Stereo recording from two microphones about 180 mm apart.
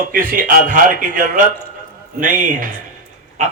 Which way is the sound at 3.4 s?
40° right (ahead or behind).